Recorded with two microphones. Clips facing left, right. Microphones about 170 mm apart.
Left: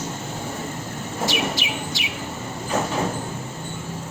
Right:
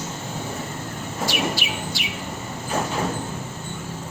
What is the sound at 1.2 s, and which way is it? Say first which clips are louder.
Bird: even; 20° left (ahead or behind).